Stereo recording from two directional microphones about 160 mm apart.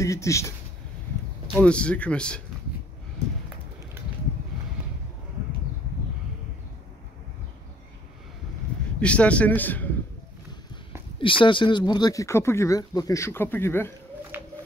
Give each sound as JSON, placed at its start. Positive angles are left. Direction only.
{"t": 0.0, "sound": "speech", "side_deg": 20}
{"t": 1.5, "sound": "speech", "side_deg": 5}
{"t": 9.0, "sound": "speech", "side_deg": 5}
{"t": 11.1, "sound": "speech", "side_deg": 30}
{"t": 14.3, "sound": "a sound", "side_deg": -15}